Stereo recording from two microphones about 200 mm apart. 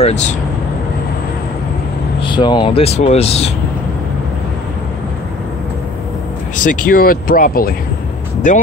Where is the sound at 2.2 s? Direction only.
25° left (ahead or behind).